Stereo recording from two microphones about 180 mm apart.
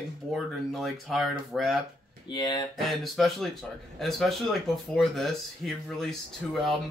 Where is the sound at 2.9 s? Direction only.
Centre (ahead or behind).